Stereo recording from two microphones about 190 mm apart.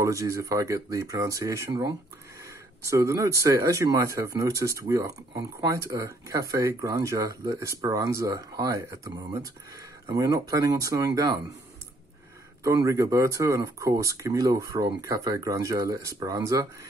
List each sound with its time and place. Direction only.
0.0 s speech: 15° right (ahead or behind)
12.6 s speech: 15° right (ahead or behind)